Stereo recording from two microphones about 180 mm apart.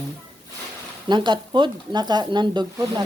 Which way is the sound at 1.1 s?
25° right (ahead or behind).